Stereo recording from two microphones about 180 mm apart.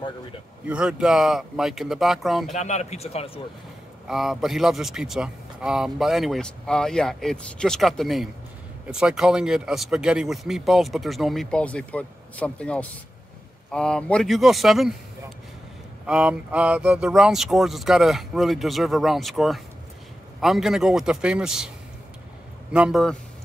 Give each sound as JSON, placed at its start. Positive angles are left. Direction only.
{"t": 0.7, "sound": "speech", "side_deg": -5}
{"t": 2.5, "sound": "speech", "side_deg": 40}
{"t": 4.1, "sound": "speech", "side_deg": 0}
{"t": 16.1, "sound": "speech", "side_deg": -5}
{"t": 22.7, "sound": "speech", "side_deg": -5}